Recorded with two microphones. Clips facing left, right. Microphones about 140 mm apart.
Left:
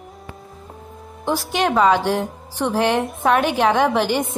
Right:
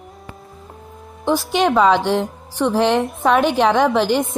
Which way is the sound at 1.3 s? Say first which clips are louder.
Right 3 dB; centre (ahead or behind).